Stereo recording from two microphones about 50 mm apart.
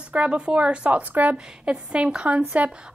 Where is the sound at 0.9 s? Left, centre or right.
Right.